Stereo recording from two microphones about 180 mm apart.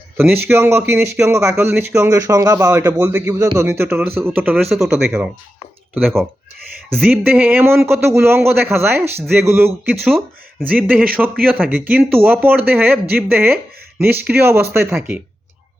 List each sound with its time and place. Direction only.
0.2 s speech: 10° right (ahead or behind)
7.0 s speech: 10° right (ahead or behind)